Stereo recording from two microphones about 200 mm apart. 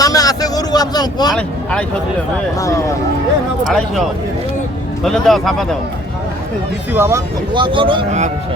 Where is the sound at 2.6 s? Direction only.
15° left (ahead or behind).